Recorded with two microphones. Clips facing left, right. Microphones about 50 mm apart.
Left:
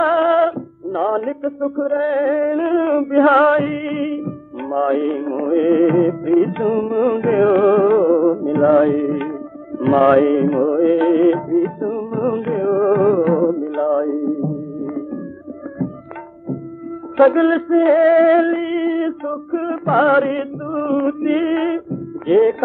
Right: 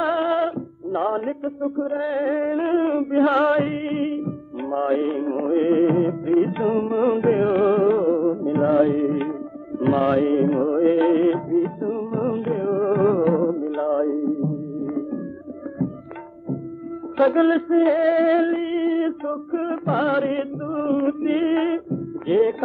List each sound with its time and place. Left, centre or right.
0.0 s music: left
0.9 s music: centre
1.6 s music: left
2.8 s music: left
8.2 s music: left
8.5 s music: left
10.4 s music: left
11.3 s music: left
12.9 s music: centre
17.2 s music: left
18.6 s female singing: left
19.8 s music: left